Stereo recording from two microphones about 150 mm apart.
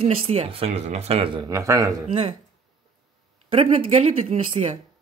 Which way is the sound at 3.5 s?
40° right (ahead or behind).